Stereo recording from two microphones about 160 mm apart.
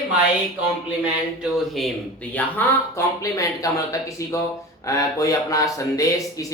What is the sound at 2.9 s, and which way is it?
Speech, 20° left (ahead or behind).